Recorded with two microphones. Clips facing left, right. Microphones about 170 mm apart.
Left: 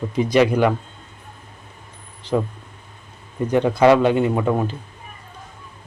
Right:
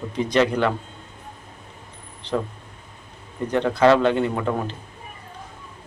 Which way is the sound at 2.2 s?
10° left (ahead or behind).